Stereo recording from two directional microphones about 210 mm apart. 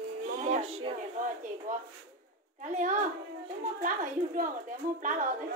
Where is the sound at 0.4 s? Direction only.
30° right (ahead or behind).